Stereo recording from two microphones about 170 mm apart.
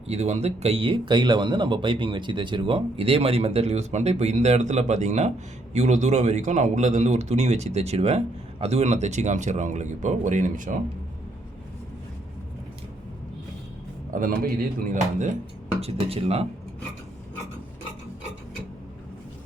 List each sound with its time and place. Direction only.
0.1 s speech: 40° right (ahead or behind)
14.1 s speech: 55° right (ahead or behind)
15.8 s speech: 35° right (ahead or behind)